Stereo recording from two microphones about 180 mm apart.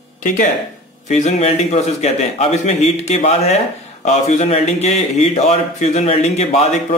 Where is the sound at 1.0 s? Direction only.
40° left (ahead or behind).